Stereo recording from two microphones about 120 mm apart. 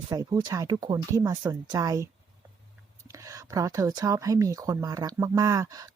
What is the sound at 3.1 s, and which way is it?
Speech, 25° right (ahead or behind).